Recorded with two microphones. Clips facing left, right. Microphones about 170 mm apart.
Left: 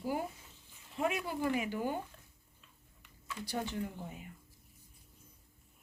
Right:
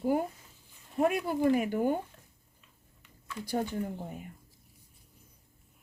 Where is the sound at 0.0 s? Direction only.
50° right (ahead or behind).